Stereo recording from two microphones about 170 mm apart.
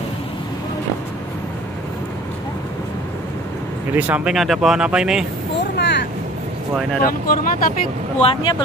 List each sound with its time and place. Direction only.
3.9 s speech: 10° right (ahead or behind)
5.6 s vehicle: 90° left
7.0 s speech: 55° left (ahead or behind)
8.2 s speech: 25° left (ahead or behind)